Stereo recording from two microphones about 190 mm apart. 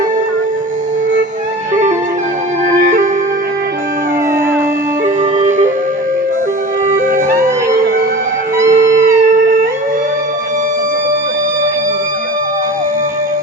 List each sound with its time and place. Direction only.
2.7 s music: 40° right (ahead or behind)
5.0 s music: 40° right (ahead or behind)
7.1 s music: 40° right (ahead or behind)
8.6 s music: 40° right (ahead or behind)